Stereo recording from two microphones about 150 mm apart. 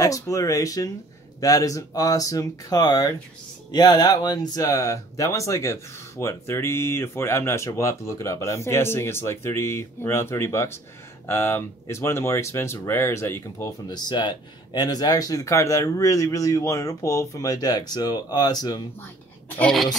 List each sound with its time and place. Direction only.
0.2 s speech: 20° left (ahead or behind)
19.6 s speech: centre (ahead or behind)